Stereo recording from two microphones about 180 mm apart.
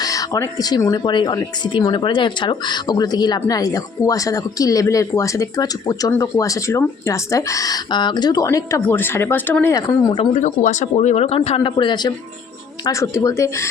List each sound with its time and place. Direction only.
0.0 s speech: 20° left (ahead or behind)
10.3 s speech: 45° left (ahead or behind); by 13.7 s 15° left (ahead or behind)